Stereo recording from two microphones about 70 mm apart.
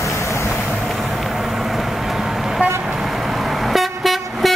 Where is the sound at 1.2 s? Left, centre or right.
Centre.